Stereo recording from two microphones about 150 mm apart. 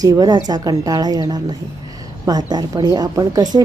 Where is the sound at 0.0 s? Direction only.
25° right (ahead or behind).